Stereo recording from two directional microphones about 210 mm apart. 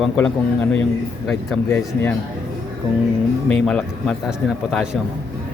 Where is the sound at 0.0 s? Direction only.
5° left (ahead or behind).